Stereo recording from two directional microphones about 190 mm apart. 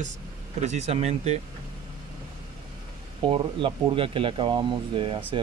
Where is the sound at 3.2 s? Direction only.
30° right (ahead or behind).